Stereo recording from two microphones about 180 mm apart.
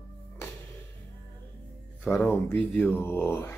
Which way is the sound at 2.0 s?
10° left (ahead or behind).